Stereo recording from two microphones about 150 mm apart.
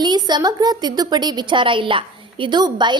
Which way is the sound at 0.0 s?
30° right (ahead or behind).